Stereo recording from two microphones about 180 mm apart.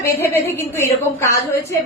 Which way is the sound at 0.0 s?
15° left (ahead or behind).